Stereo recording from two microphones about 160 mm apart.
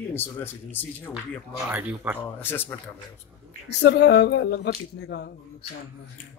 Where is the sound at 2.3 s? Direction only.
10° left (ahead or behind).